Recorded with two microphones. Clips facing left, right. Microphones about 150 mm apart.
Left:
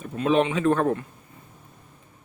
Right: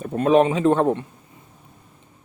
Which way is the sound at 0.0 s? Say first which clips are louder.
Right 4 dB; 45° right (ahead or behind).